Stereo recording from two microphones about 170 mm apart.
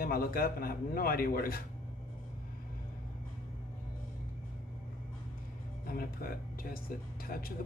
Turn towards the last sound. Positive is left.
turn(degrees=55)  # may be behind; listen again after turning